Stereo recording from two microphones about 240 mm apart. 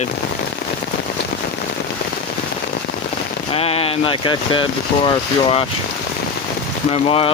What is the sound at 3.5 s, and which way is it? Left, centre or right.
Speech, left.